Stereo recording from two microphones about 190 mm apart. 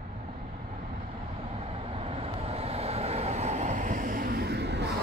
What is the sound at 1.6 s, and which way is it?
Vehicle, 30° right (ahead or behind).